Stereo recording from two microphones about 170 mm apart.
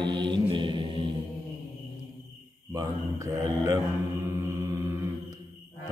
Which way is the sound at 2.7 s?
20° right (ahead or behind).